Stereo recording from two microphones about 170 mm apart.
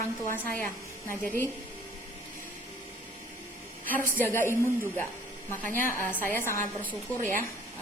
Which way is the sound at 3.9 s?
10° left (ahead or behind).